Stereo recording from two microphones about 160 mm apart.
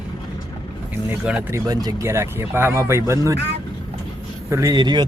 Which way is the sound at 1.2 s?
10° right (ahead or behind).